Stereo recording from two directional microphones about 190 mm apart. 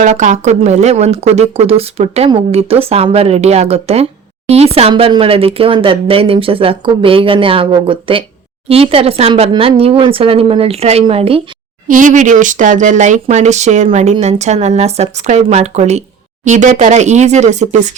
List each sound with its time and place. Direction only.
0.0 s speech: 40° right (ahead or behind)
11.9 s speech: 45° right (ahead or behind)